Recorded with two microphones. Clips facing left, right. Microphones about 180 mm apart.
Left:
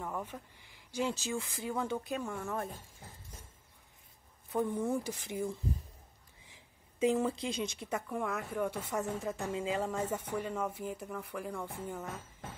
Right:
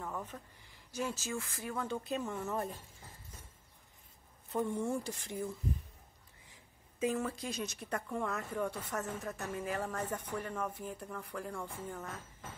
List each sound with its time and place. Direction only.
0.0 s speech: 10° left (ahead or behind)
2.0 s speech: centre (ahead or behind)
4.6 s a woman's voice: 15° left (ahead or behind)
7.0 s a woman's voice: 20° left (ahead or behind)
7.8 s a woman's voice: 10° left (ahead or behind)